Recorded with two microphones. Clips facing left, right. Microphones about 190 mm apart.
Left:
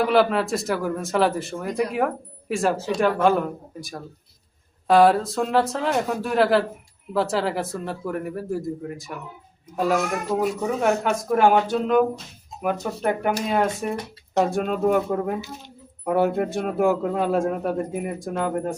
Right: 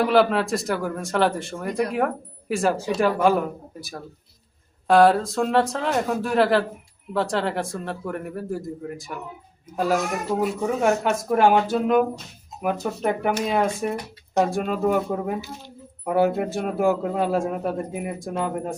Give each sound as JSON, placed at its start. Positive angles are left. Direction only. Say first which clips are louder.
{"t": 0.0, "sound": "speech", "louder": "even", "side_deg": 0}